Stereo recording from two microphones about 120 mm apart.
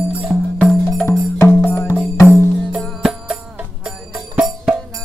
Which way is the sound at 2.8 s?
Centre (ahead or behind).